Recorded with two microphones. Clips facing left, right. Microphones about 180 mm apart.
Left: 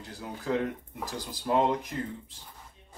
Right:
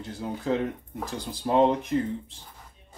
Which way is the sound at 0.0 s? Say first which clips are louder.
Right 6 dB; 25° right (ahead or behind).